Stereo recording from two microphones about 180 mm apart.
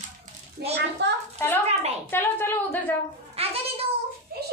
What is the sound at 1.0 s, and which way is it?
Speech, 70° right (ahead or behind).